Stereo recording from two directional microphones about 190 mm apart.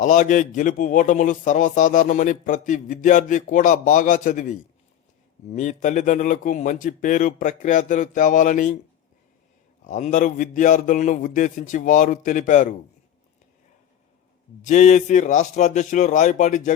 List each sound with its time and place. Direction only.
0.0 s a man's voice: 40° left (ahead or behind)
9.8 s a man's voice: 40° left (ahead or behind)
14.6 s a man's voice: 40° left (ahead or behind)